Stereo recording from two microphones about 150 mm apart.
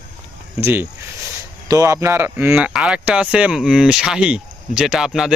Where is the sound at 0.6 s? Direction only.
15° right (ahead or behind).